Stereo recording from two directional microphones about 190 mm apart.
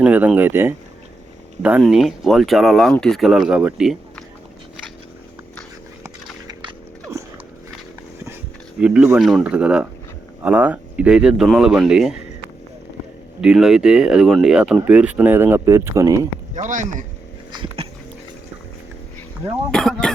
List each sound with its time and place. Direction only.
0.0 s speech: 5° right (ahead or behind)
6.5 s horse: 25° right (ahead or behind)
8.8 s speech: 5° right (ahead or behind)
13.4 s speech: centre (ahead or behind)
16.6 s speech: 40° right (ahead or behind)
17.5 s dog: 25° right (ahead or behind)
19.7 s speech: centre (ahead or behind)